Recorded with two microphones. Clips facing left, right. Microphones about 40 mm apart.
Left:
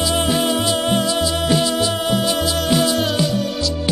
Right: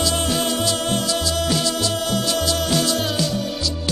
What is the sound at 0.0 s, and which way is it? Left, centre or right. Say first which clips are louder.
Music: left 3 dB; centre.